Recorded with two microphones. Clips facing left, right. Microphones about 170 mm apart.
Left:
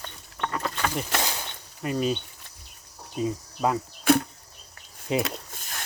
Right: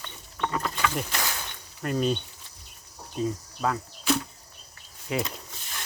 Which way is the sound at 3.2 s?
15° left (ahead or behind).